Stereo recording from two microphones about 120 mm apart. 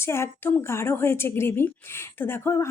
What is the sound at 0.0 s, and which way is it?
A woman's voice, 20° left (ahead or behind).